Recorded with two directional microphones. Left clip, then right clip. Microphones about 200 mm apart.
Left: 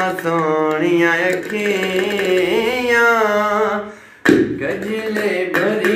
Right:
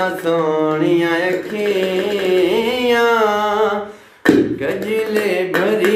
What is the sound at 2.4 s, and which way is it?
Music, 15° right (ahead or behind).